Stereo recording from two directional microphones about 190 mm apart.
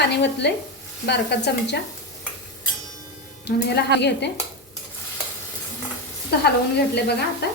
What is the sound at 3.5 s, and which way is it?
Speech, 60° left (ahead or behind).